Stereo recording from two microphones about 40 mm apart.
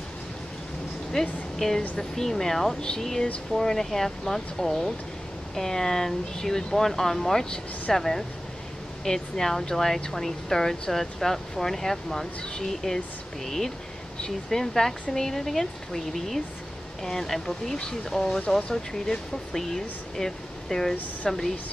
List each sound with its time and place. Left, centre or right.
1.6 s speech: centre